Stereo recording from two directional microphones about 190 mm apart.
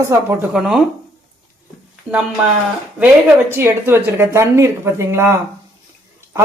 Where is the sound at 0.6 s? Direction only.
Centre (ahead or behind).